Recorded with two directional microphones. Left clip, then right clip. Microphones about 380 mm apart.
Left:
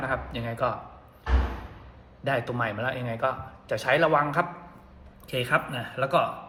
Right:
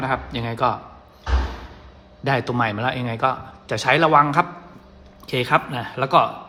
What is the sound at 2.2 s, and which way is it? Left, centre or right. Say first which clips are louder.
Speech: right 6 dB; right.